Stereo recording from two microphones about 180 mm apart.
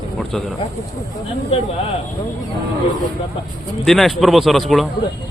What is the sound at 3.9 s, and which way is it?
Speech, centre (ahead or behind).